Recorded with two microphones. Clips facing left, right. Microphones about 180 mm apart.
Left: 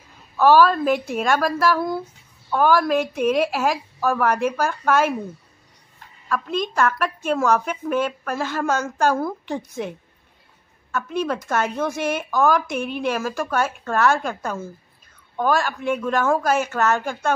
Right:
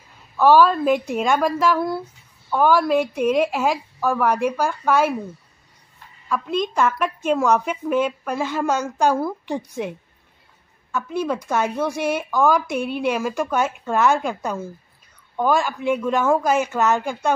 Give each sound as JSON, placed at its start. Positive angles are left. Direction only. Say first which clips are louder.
{"t": 0.4, "sound": "speech", "louder": "even", "side_deg": -15}
{"t": 0.7, "sound": "a woman's voice", "louder": "right 1 dB", "side_deg": 10}
{"t": 1.3, "sound": "a woman's voice", "louder": "even", "side_deg": -15}
{"t": 6.2, "sound": "a woman's voice", "louder": "right 1 dB", "side_deg": -15}